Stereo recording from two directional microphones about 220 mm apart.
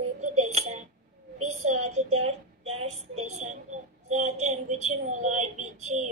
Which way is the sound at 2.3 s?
30° right (ahead or behind).